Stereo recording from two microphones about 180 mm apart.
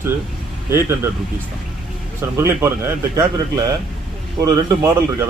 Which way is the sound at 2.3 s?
15° right (ahead or behind).